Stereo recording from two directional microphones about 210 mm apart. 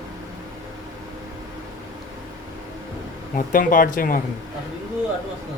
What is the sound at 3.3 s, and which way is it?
Speech, 40° left (ahead or behind).